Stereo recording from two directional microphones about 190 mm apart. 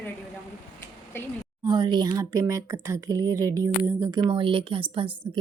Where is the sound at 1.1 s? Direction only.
10° left (ahead or behind).